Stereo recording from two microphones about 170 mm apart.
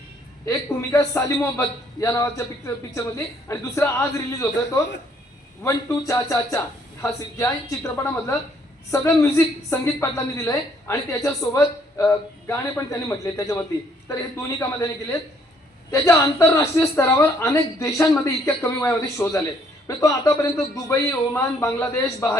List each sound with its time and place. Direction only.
0.4 s a woman's voice: 20° left (ahead or behind)
15.9 s a woman's voice: 20° left (ahead or behind)